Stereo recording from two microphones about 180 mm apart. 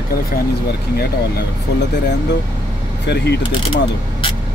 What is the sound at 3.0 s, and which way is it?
Speech, 70° left (ahead or behind).